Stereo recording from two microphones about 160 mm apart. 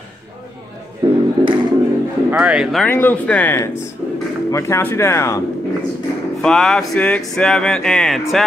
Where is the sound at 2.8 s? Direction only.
10° left (ahead or behind).